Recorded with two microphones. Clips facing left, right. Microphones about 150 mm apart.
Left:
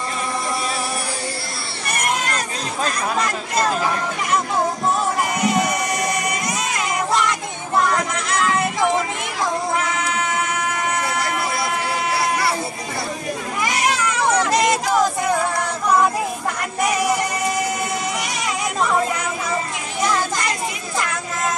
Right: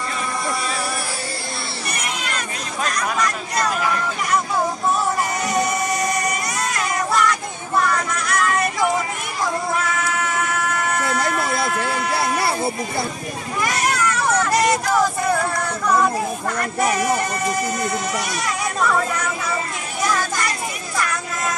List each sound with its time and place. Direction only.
1.9 s a sound: 50° left (ahead or behind)
5.4 s music: 20° left (ahead or behind)
6.7 s child singing: 20° left (ahead or behind)
8.3 s music: 20° left (ahead or behind)
9.8 s vehicle: 20° left (ahead or behind)
13.7 s a sound: 20° left (ahead or behind)
18.8 s speech: 20° left (ahead or behind)